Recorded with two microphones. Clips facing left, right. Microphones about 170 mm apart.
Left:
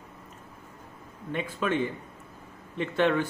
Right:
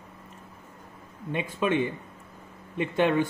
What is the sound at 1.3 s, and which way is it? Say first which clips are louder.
Speech: right 2 dB; 15° right (ahead or behind).